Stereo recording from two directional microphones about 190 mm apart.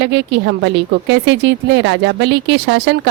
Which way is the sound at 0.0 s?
65° right (ahead or behind).